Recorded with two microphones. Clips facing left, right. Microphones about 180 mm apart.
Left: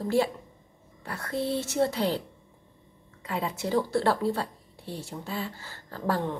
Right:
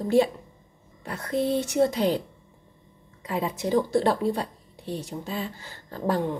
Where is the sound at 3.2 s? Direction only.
20° right (ahead or behind).